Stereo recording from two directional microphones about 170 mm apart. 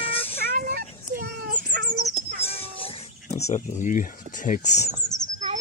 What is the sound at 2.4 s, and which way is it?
Music, 35° left (ahead or behind).